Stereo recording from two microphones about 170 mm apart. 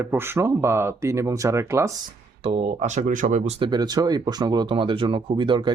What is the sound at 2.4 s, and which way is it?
Speech, 35° right (ahead or behind).